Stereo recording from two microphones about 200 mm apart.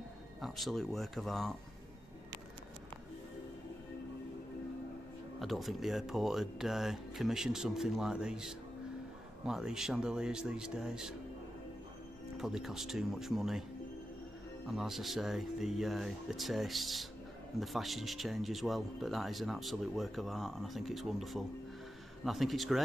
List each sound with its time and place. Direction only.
0.4 s speech: centre (ahead or behind)
5.4 s speech: centre (ahead or behind)
12.4 s speech: centre (ahead or behind)
14.7 s speech: centre (ahead or behind)